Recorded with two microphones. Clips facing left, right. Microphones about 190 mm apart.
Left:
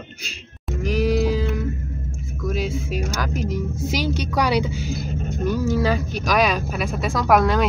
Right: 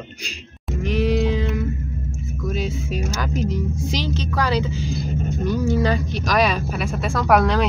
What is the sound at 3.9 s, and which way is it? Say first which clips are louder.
A woman's voice: left 1 dB; 10° left (ahead or behind).